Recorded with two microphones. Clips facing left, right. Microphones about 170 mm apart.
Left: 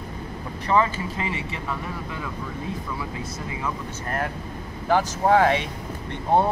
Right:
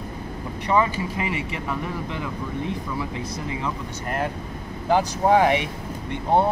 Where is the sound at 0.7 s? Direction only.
15° right (ahead or behind).